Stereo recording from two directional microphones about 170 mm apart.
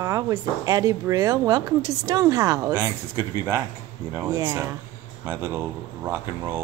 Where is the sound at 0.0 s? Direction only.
20° right (ahead or behind).